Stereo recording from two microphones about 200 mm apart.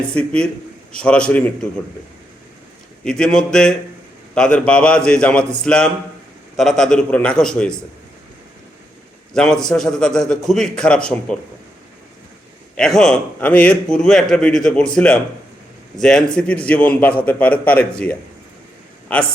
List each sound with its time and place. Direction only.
0.1 s a man's voice: 5° left (ahead or behind)
3.0 s a man's voice: 5° left (ahead or behind)
9.3 s a man's voice: 5° left (ahead or behind)
12.7 s a man's voice: 5° left (ahead or behind)